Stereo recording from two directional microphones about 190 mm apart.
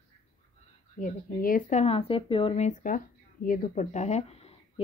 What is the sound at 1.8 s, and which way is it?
Speech, 30° left (ahead or behind).